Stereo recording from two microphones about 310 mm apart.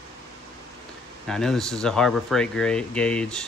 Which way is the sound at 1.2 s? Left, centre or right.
Centre.